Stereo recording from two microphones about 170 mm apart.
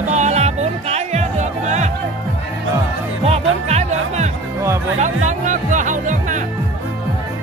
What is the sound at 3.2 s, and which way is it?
Music, 40° right (ahead or behind).